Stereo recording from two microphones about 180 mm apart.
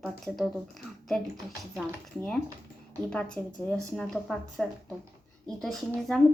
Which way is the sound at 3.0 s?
5° left (ahead or behind).